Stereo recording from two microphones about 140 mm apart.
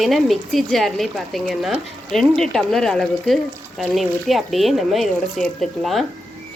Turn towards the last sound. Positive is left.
turn(degrees=0)  # may be behind; listen again after turning